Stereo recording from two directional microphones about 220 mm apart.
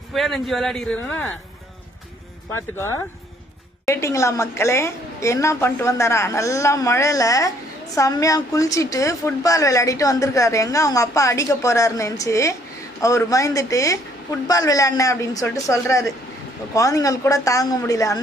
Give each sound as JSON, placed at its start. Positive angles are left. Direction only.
{"t": 0.1, "sound": "a man's voice", "side_deg": 0}
{"t": 3.8, "sound": "a woman's voice", "side_deg": 15}